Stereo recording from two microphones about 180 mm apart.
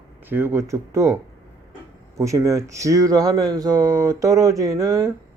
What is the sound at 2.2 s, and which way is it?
Speech, 15° right (ahead or behind).